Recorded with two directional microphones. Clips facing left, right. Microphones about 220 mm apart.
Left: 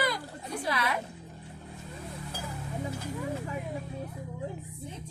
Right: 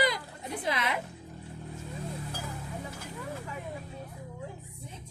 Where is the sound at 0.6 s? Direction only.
20° right (ahead or behind).